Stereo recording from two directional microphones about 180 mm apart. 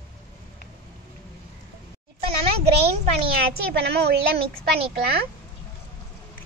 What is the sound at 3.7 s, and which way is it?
A woman's voice, 65° right (ahead or behind).